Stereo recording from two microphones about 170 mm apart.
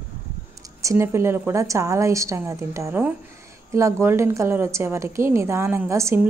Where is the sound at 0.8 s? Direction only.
15° right (ahead or behind).